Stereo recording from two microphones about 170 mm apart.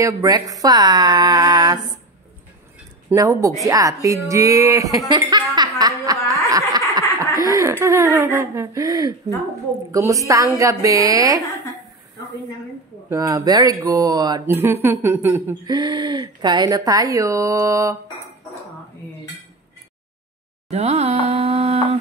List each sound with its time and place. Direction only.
0.0 s speech: 20° right (ahead or behind)
3.1 s speech: 20° right (ahead or behind)
6.5 s snicker: 20° right (ahead or behind)
7.4 s speech: 20° right (ahead or behind)
13.1 s speech: 20° right (ahead or behind)
15.6 s speech: 25° right (ahead or behind)
20.7 s music: 40° right (ahead or behind)
21.3 s humming: 35° right (ahead or behind)